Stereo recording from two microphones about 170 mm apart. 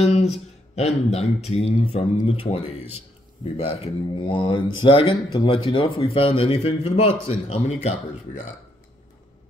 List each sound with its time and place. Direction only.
0.0 s speech: 40° left (ahead or behind)
8.3 s speech: 50° left (ahead or behind)